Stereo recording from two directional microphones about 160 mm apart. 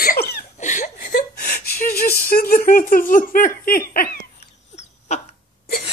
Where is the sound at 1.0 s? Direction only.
75° left (ahead or behind).